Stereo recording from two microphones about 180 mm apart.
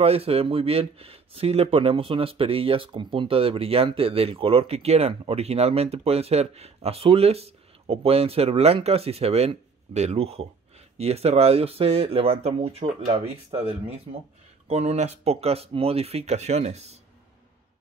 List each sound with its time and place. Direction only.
0.0 s speech: 35° right (ahead or behind)